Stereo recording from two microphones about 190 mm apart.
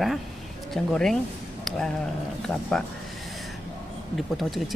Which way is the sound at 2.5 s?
5° left (ahead or behind).